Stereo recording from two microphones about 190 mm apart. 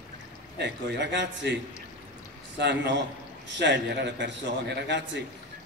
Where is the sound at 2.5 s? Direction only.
65° right (ahead or behind).